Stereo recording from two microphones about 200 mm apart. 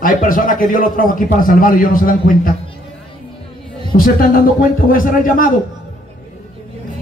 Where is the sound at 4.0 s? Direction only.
45° left (ahead or behind).